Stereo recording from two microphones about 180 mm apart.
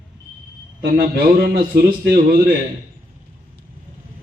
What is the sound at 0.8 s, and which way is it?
Speech, 55° right (ahead or behind).